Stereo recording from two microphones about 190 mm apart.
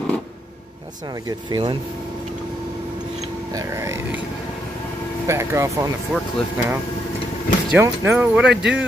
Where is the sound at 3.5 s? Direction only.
15° right (ahead or behind).